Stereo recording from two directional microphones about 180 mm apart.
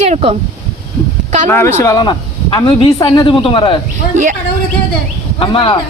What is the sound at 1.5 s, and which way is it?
Speech, 15° left (ahead or behind).